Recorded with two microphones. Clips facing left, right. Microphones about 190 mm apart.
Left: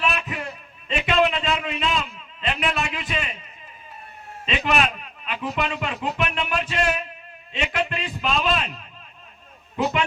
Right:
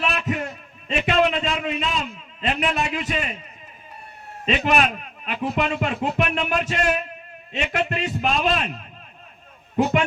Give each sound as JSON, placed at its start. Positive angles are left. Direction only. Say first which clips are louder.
{"t": 0.0, "sound": "a sound", "louder": "right 2 dB", "side_deg": -45}
{"t": 0.9, "sound": "a man's voice", "louder": "right 1 dB", "side_deg": -45}
{"t": 4.4, "sound": "a man's voice", "louder": "right 3 dB", "side_deg": -40}